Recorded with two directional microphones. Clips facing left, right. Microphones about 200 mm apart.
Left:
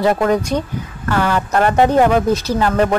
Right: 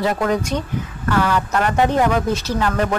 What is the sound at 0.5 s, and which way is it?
Speech, 45° left (ahead or behind).